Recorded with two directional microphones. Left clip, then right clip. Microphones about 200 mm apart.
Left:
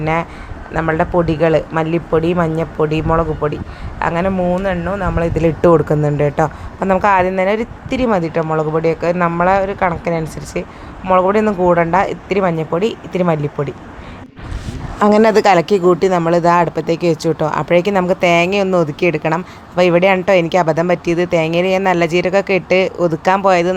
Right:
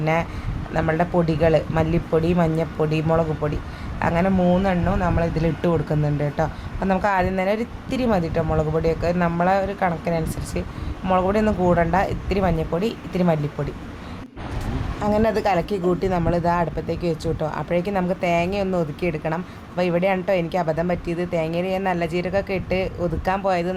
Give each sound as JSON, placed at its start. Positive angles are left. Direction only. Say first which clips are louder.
{"t": 0.0, "sound": "speech", "louder": "left 4 dB", "side_deg": 20}
{"t": 5.1, "sound": "speech", "louder": "left 7 dB", "side_deg": 35}
{"t": 6.8, "sound": "speech", "louder": "left 8 dB", "side_deg": 25}
{"t": 15.0, "sound": "speech", "louder": "left 10 dB", "side_deg": 30}